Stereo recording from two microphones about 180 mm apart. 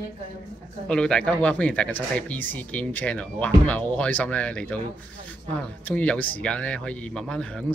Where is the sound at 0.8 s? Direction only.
5° left (ahead or behind).